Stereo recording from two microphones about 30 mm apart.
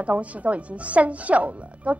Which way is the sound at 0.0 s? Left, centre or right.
Right.